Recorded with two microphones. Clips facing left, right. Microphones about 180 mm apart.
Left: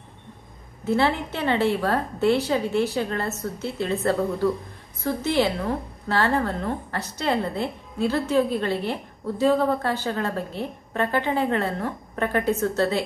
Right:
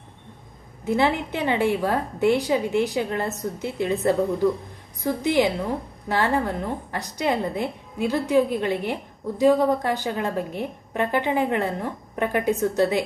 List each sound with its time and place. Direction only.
0.8 s a woman's voice: 15° right (ahead or behind)